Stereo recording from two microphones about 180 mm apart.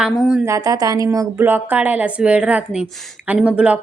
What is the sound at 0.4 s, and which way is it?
A woman's voice, 15° right (ahead or behind).